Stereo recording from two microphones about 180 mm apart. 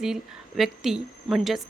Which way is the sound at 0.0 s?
Centre (ahead or behind).